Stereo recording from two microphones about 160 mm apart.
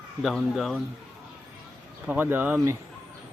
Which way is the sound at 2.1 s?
10° right (ahead or behind).